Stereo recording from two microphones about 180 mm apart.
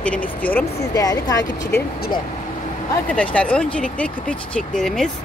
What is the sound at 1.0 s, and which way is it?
Speech, 20° left (ahead or behind).